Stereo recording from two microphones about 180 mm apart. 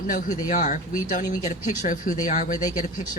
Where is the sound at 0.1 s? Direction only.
50° left (ahead or behind).